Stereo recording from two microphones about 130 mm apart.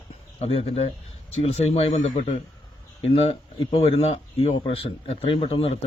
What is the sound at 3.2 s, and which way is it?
A man's voice, 50° left (ahead or behind).